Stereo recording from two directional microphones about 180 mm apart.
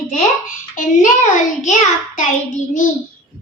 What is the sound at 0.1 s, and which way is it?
A child's voice, 45° left (ahead or behind).